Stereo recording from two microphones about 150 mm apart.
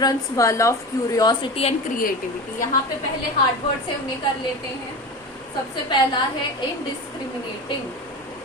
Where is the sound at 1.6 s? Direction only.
40° left (ahead or behind).